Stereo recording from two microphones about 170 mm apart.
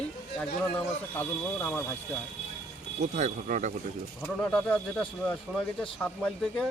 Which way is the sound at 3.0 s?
45° right (ahead or behind).